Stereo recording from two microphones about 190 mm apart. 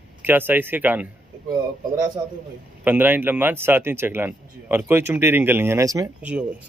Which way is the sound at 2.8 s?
10° right (ahead or behind).